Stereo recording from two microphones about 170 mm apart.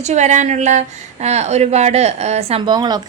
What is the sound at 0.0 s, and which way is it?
A woman's voice, 45° right (ahead or behind).